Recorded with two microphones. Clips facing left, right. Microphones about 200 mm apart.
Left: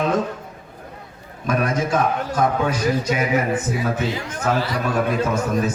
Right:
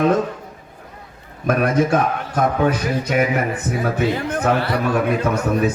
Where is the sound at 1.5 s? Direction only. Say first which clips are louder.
Right 4 dB; 60° right (ahead or behind).